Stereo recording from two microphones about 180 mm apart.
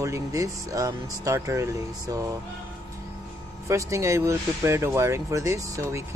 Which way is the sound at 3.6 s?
15° right (ahead or behind).